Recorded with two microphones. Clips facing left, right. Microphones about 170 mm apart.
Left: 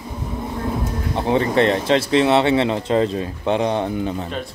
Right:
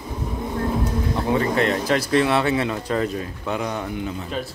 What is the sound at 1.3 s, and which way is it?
Speech, 30° left (ahead or behind).